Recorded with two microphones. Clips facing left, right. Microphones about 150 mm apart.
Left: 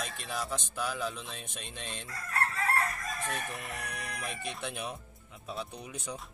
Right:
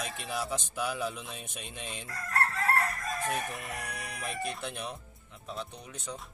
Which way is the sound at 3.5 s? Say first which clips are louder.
Right 1 dB; centre (ahead or behind).